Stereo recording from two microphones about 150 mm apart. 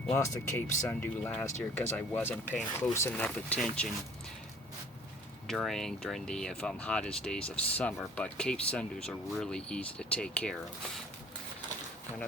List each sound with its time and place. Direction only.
0.1 s speech: 15° left (ahead or behind)
5.5 s speech: centre (ahead or behind)